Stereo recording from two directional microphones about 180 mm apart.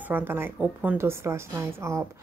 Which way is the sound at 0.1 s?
10° right (ahead or behind).